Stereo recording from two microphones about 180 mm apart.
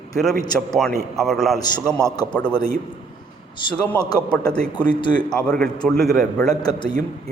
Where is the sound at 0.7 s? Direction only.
Centre (ahead or behind).